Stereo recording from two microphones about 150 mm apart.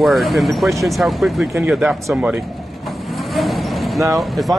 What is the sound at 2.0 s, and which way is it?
Vehicle, centre (ahead or behind).